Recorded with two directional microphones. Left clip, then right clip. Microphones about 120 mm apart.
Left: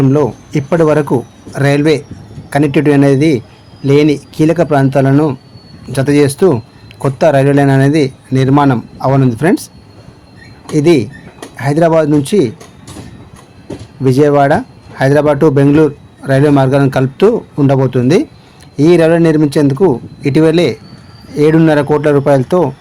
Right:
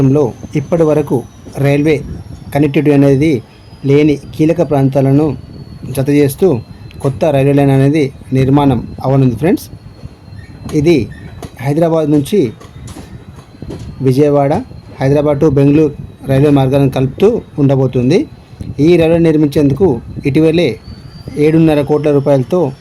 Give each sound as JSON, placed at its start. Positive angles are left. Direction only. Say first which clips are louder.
{"t": 0.5, "sound": "a man's voice", "louder": "left 1 dB", "side_deg": 45}
{"t": 10.8, "sound": "a man's voice", "louder": "left 1 dB", "side_deg": 40}
{"t": 14.0, "sound": "a man's voice", "louder": "left 2 dB", "side_deg": 40}